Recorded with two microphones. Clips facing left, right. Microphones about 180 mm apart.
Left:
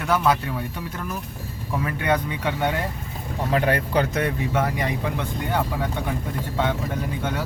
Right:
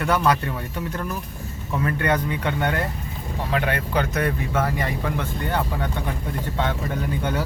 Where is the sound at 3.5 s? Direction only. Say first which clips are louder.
Left 3 dB; 35° left (ahead or behind).